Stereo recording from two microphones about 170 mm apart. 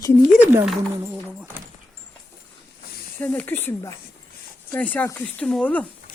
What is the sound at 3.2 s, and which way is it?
Speech, 10° left (ahead or behind).